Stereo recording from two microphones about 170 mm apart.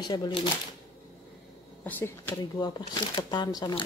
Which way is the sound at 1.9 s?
10° left (ahead or behind).